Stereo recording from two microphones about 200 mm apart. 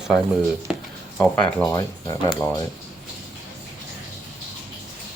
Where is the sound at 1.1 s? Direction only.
5° left (ahead or behind).